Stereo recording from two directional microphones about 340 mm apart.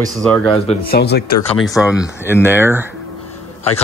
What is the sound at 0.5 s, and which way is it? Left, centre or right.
Speech, centre.